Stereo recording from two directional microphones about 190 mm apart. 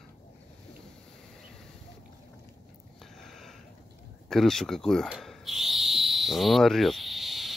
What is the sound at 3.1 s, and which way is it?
Sniff, centre (ahead or behind).